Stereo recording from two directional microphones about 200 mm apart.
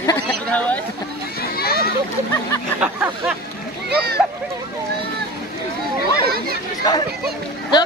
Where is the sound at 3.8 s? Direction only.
55° right (ahead or behind).